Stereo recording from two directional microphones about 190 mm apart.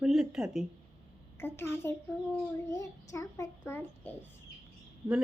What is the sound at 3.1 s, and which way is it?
A child's voice, 15° left (ahead or behind).